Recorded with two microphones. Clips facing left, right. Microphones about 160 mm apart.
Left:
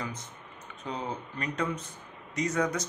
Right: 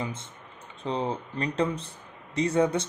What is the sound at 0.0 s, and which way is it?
Typing, 25° right (ahead or behind).